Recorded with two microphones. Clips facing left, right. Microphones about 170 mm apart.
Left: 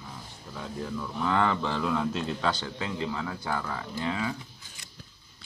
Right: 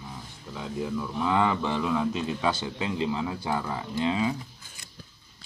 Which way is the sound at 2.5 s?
20° right (ahead or behind).